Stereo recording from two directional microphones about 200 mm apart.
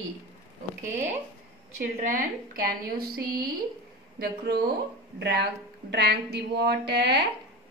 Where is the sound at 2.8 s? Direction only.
50° right (ahead or behind).